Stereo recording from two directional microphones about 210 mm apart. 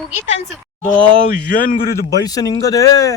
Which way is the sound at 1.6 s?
40° left (ahead or behind).